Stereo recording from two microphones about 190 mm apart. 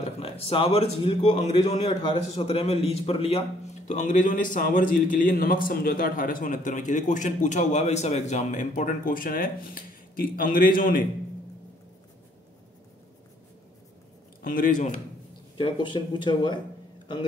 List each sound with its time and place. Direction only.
0.0 s a man's voice: 30° left (ahead or behind); by 11.0 s 50° left (ahead or behind)
14.4 s a man's voice: 45° left (ahead or behind)
15.5 s speech: 25° left (ahead or behind)